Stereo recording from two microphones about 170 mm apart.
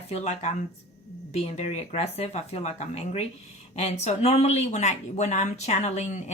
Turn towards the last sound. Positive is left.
turn(degrees=45)  # may be behind; listen again after turning